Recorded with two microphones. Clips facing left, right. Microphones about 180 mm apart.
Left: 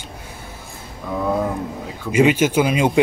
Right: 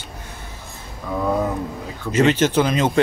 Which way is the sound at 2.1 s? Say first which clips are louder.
Left 1 dB; 10° left (ahead or behind).